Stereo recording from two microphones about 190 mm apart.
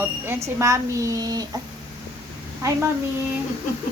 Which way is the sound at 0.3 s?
15° right (ahead or behind).